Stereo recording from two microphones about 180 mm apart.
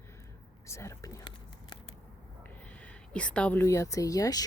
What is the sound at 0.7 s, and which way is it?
Whispering, 15° left (ahead or behind).